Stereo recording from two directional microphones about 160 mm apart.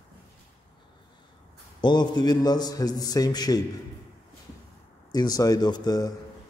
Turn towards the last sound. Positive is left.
turn(degrees=25)  # may be behind; listen again after turning